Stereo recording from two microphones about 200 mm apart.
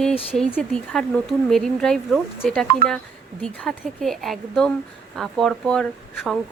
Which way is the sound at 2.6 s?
50° right (ahead or behind).